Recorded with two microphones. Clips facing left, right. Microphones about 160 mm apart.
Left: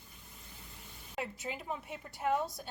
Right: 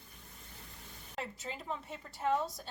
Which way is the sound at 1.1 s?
10° left (ahead or behind).